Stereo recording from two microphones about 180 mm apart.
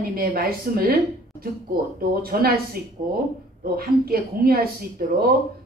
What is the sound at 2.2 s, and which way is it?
Speech, 60° right (ahead or behind).